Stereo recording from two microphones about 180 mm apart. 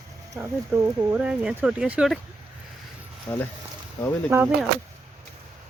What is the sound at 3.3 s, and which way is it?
Speech, 20° left (ahead or behind).